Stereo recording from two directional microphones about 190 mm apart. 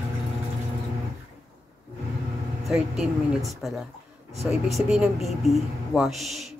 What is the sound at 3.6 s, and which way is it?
Speech, centre (ahead or behind).